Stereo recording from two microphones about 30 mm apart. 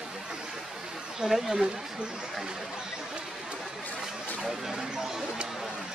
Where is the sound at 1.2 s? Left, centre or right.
Right.